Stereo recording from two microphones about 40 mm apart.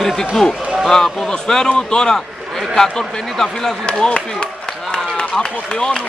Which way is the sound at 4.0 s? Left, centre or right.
Left.